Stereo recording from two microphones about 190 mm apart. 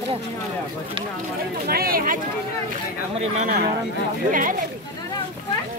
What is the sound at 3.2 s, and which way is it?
Speech, 40° right (ahead or behind).